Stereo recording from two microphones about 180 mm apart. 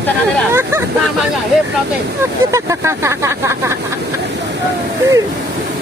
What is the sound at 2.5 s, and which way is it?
Speech, 15° right (ahead or behind).